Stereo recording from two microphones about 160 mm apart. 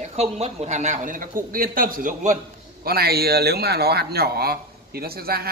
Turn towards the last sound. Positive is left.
turn(degrees=-70)  # may be behind; listen again after turning